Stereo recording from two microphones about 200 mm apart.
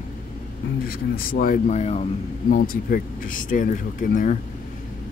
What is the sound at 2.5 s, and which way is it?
Speech, 45° left (ahead or behind).